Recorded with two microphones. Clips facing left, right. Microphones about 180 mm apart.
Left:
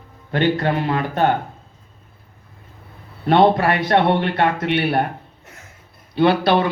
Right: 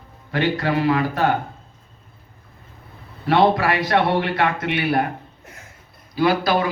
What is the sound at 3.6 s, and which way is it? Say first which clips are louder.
A man's voice: left 2 dB; 25° left (ahead or behind).